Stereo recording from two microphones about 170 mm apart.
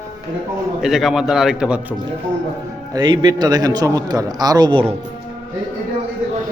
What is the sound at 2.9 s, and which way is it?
Speech, 25° right (ahead or behind).